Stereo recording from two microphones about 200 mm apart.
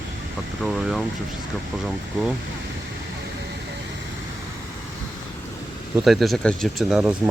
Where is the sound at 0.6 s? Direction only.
Centre (ahead or behind).